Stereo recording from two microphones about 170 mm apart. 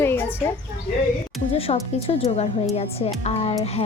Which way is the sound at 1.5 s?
35° left (ahead or behind).